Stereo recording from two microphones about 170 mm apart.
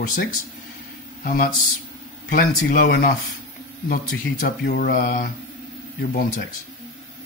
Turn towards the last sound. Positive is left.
turn(degrees=55)  # may be behind; listen again after turning